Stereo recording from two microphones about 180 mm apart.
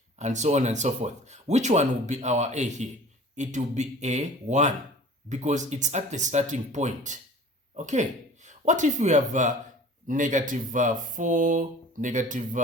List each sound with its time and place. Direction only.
0.2 s speech: 40° right (ahead or behind)